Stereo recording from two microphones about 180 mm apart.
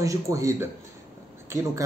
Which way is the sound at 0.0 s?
15° right (ahead or behind).